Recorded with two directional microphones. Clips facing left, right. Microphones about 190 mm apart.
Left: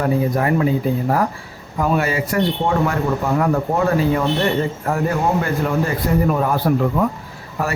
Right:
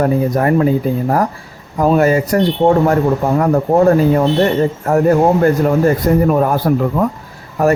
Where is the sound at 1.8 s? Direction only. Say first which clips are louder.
Right 7 dB; 45° right (ahead or behind).